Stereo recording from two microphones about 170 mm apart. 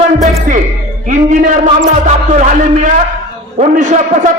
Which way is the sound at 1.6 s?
45° right (ahead or behind).